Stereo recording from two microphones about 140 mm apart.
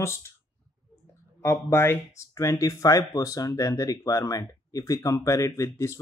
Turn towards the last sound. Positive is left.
turn(degrees=20)  # may be behind; listen again after turning